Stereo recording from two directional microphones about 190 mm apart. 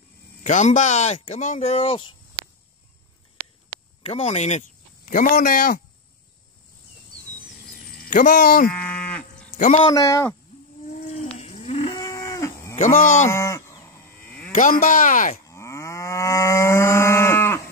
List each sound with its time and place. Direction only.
0.4 s speech: 40° left (ahead or behind)
3.4 s a sound: 30° right (ahead or behind)
4.0 s speech: 35° left (ahead or behind)
8.1 s speech: 45° left (ahead or behind)
8.6 s cattle: 5° left (ahead or behind)
9.5 s a sound: 40° left (ahead or behind)
9.8 s speech: 25° left (ahead or behind)
10.5 s wild animals: 35° left (ahead or behind)
11.3 s livestock: 35° left (ahead or behind); by 12.7 s 15° left (ahead or behind)
12.7 s speech: 45° left (ahead or behind)
13.3 s cattle: 15° left (ahead or behind)
14.5 s speech: 45° left (ahead or behind)
15.4 s livestock: 15° left (ahead or behind)